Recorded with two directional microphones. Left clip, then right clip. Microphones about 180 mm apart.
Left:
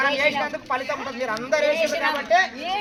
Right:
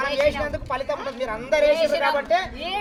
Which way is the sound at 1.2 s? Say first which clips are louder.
Right 2 dB; 25° right (ahead or behind).